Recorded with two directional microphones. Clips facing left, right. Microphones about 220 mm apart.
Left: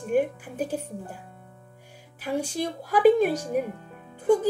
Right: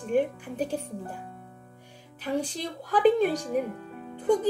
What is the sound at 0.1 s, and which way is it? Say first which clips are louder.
Speech: left 1 dB; 5° left (ahead or behind).